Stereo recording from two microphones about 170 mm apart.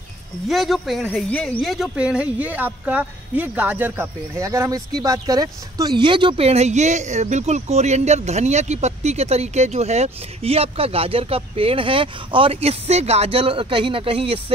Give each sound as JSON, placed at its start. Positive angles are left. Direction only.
{"t": 0.5, "sound": "speech", "side_deg": 0}